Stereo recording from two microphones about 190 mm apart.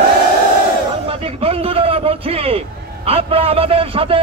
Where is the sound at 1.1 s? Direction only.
30° right (ahead or behind).